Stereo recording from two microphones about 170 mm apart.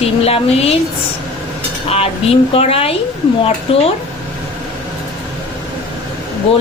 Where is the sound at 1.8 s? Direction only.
35° left (ahead or behind).